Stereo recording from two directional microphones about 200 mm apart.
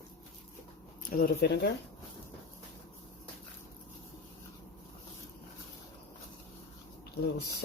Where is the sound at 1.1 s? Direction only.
50° left (ahead or behind).